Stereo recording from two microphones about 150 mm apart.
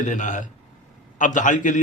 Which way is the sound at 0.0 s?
55° left (ahead or behind).